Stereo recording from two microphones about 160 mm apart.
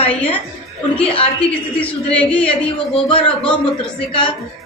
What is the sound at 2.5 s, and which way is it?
Speech, 35° left (ahead or behind).